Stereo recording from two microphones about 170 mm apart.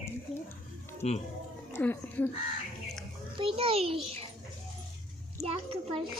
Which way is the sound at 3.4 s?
35° right (ahead or behind).